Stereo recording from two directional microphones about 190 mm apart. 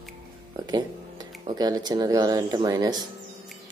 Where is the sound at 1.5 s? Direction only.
20° right (ahead or behind).